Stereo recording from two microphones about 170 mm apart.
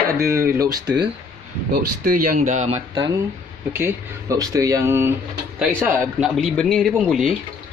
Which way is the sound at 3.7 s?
15° right (ahead or behind).